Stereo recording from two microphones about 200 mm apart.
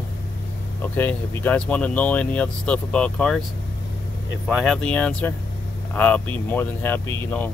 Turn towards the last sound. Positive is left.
turn(degrees=10)  # may be behind; listen again after turning